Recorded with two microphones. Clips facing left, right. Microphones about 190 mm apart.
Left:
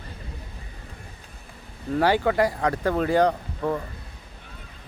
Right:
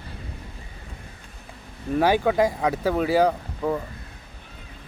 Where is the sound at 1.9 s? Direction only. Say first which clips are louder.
Right 1 dB; 10° right (ahead or behind).